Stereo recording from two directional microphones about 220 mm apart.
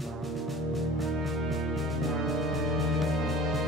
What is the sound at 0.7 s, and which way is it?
Music, centre (ahead or behind).